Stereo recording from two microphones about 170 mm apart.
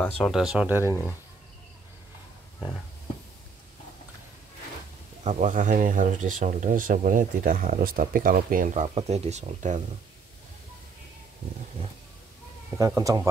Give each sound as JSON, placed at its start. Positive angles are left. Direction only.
{"t": 0.2, "sound": "speech", "side_deg": 0}
{"t": 5.2, "sound": "speech", "side_deg": -45}
{"t": 8.9, "sound": "speech", "side_deg": -40}
{"t": 12.7, "sound": "speech", "side_deg": -20}